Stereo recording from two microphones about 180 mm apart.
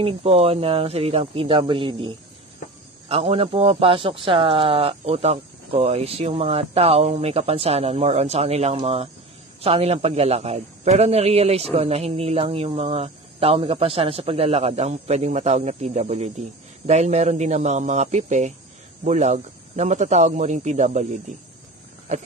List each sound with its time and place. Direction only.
0.0 s speech: 35° right (ahead or behind)
3.1 s speech: 30° right (ahead or behind)